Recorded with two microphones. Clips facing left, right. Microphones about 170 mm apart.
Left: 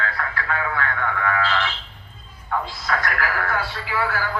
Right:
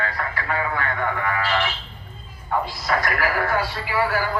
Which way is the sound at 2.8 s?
20° right (ahead or behind).